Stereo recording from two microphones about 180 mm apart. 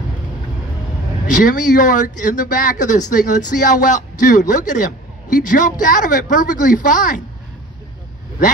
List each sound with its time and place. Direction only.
1.2 s speech: 45° left (ahead or behind)